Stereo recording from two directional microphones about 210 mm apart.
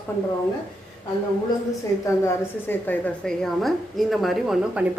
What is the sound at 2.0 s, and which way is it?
A woman's voice, 10° left (ahead or behind).